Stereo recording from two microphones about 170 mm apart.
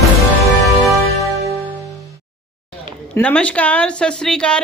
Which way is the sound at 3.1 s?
10° left (ahead or behind).